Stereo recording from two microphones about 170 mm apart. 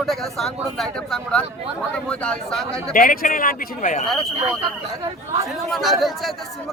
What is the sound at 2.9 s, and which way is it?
A man's voice, 55° left (ahead or behind).